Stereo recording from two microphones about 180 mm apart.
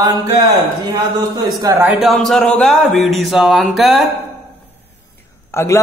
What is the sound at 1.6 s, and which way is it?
Speech, 20° right (ahead or behind).